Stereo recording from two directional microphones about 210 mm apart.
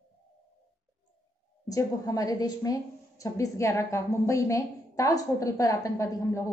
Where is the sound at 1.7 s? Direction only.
15° left (ahead or behind).